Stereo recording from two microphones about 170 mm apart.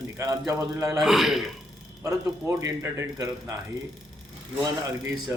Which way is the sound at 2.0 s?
15° right (ahead or behind).